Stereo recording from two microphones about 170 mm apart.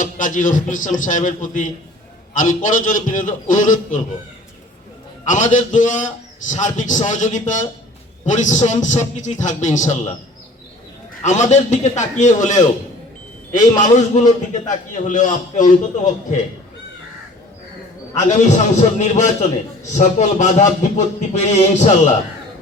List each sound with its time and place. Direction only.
0.0 s a man's voice: 50° left (ahead or behind)
5.2 s a man's voice: 45° left (ahead or behind)
11.2 s a man's voice: 45° left (ahead or behind)
13.7 s a man's voice: 45° left (ahead or behind)
18.3 s a man's voice: 45° left (ahead or behind)